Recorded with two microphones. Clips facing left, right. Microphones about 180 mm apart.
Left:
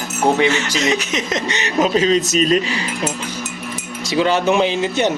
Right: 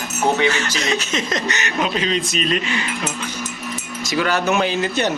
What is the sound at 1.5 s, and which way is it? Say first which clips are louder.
Speech: left 5 dB; 30° left (ahead or behind).